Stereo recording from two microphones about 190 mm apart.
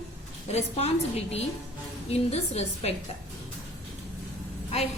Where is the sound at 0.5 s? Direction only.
35° left (ahead or behind).